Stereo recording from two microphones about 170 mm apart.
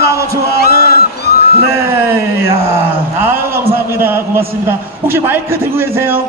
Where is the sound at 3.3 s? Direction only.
15° right (ahead or behind).